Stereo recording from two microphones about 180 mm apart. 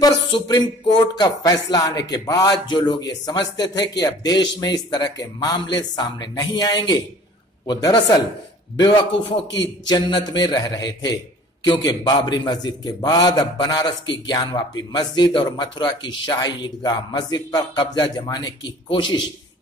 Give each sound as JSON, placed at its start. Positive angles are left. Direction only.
{"t": 0.0, "sound": "speech", "side_deg": 20}